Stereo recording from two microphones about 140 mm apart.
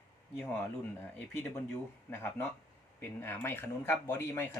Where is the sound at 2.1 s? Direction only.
15° left (ahead or behind).